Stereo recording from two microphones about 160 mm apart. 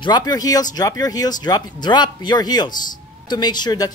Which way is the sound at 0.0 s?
25° left (ahead or behind).